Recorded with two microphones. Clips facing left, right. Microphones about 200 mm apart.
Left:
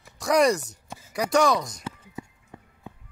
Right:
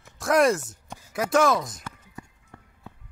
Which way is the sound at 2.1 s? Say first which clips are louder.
Left 4 dB; 15° left (ahead or behind).